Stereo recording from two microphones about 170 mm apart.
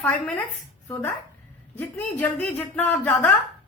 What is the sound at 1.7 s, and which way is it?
Speech, 10° left (ahead or behind).